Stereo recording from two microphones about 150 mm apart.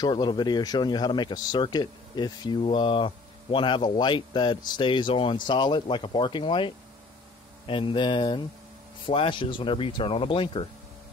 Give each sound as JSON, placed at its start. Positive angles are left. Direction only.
{"t": 0.0, "sound": "a man's voice", "side_deg": 30}